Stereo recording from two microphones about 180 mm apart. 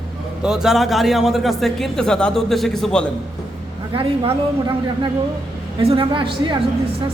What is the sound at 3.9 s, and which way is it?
Speech, 30° right (ahead or behind).